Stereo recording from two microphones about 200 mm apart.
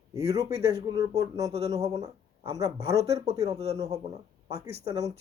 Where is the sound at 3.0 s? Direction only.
30° right (ahead or behind).